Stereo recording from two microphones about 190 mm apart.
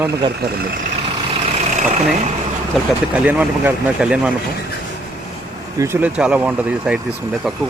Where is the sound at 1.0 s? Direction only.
30° right (ahead or behind).